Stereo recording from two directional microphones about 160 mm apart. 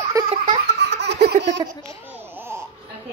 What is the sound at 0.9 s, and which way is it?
Baby laughter, 90° right.